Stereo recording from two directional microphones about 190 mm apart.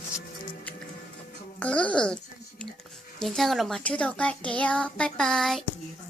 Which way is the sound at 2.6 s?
Centre (ahead or behind).